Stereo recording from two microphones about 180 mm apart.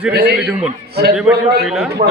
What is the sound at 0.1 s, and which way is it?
Speech, 60° right (ahead or behind).